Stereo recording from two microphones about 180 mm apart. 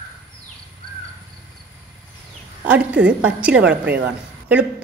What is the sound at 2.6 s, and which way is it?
A woman's voice, 5° right (ahead or behind).